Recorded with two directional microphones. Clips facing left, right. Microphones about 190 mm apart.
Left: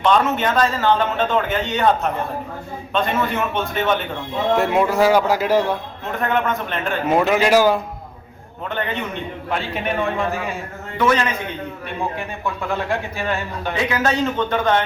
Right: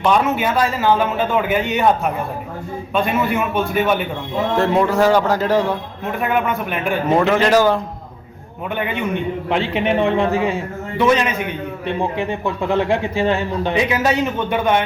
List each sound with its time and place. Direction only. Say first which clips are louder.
0.0 s a man's voice: right 1 dB; 10° right (ahead or behind)
4.5 s speech: right 1 dB; 10° left (ahead or behind)
6.1 s a man's voice: right 1 dB; 10° right (ahead or behind)
7.1 s speech: right 1 dB; 10° left (ahead or behind)
8.7 s a man's voice: right 4 dB; 10° right (ahead or behind)
12.7 s a man's voice: right 8 dB; 25° right (ahead or behind)